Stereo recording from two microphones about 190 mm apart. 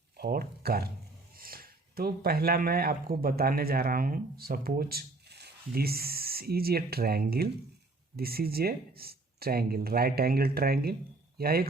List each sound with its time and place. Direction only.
0.2 s speech: 55° right (ahead or behind)